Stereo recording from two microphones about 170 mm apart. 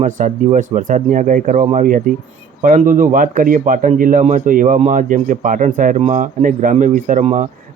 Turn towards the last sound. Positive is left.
turn(degrees=-45)  # may be behind; listen again after turning